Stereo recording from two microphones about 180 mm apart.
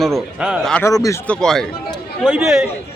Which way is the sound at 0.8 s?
15° left (ahead or behind).